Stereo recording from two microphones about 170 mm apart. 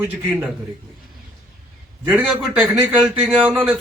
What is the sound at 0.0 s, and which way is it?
Speech, 15° right (ahead or behind).